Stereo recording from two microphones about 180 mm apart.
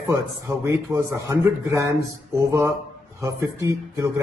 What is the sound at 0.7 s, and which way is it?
Speech, 15° right (ahead or behind).